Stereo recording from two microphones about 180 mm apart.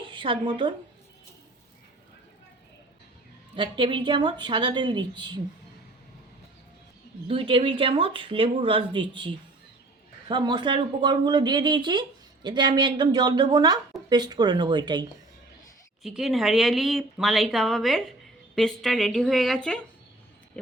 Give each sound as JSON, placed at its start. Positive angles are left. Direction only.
{"t": 0.0, "sound": "a woman's voice", "side_deg": -30}
{"t": 3.5, "sound": "speech", "side_deg": -25}
{"t": 7.3, "sound": "speech", "side_deg": -30}
{"t": 16.0, "sound": "a woman's voice", "side_deg": 0}